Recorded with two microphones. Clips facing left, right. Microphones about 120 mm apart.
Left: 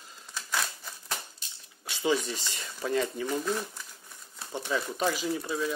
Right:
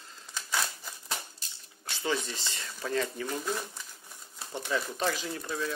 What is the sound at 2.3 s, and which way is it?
Speech, 15° left (ahead or behind).